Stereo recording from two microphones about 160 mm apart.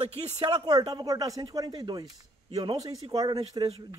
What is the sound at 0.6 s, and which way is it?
Speech, 25° right (ahead or behind).